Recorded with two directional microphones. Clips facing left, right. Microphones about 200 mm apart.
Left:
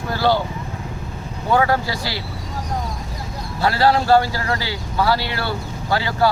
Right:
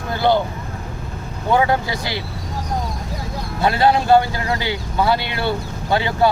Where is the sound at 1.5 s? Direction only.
20° right (ahead or behind).